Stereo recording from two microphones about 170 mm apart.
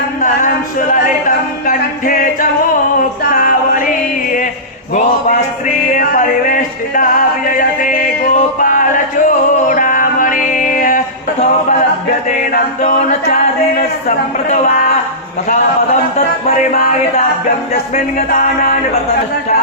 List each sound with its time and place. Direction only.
0.2 s a sound: 55° left (ahead or behind)
1.6 s music: 55° left (ahead or behind)
5.6 s music: 50° left (ahead or behind)
12.4 s chant: 50° left (ahead or behind)
13.2 s a capella: 50° left (ahead or behind)
16.1 s speech: 40° left (ahead or behind)
17.9 s chant: 50° left (ahead or behind)